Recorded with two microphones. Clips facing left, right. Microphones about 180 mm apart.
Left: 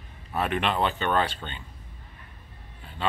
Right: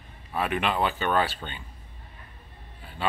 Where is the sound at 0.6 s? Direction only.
5° right (ahead or behind).